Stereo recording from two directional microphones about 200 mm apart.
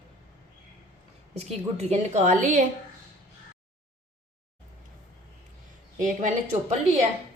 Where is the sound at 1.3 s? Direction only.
35° right (ahead or behind).